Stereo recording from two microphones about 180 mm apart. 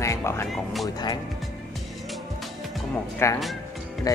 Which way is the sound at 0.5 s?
Centre (ahead or behind).